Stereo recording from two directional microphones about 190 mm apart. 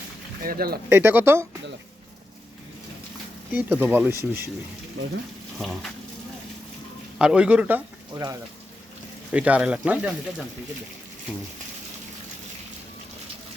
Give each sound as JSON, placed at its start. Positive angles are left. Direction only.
{"t": 0.4, "sound": "speech", "side_deg": -50}
{"t": 0.9, "sound": "speech", "side_deg": -10}
{"t": 3.5, "sound": "speech", "side_deg": -10}
{"t": 5.5, "sound": "speech", "side_deg": 0}
{"t": 7.2, "sound": "speech", "side_deg": -5}
{"t": 8.1, "sound": "speech", "side_deg": -15}
{"t": 9.3, "sound": "speech", "side_deg": -5}